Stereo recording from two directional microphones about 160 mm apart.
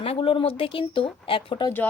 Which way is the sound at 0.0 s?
35° left (ahead or behind).